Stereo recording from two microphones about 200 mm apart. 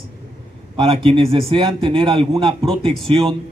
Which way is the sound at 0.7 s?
25° right (ahead or behind).